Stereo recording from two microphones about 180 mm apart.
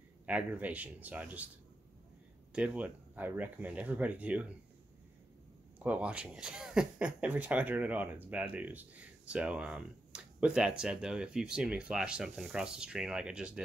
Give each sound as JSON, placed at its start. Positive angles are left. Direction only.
{"t": 0.3, "sound": "speech", "side_deg": -10}
{"t": 2.5, "sound": "speech", "side_deg": -5}
{"t": 5.8, "sound": "speech", "side_deg": -5}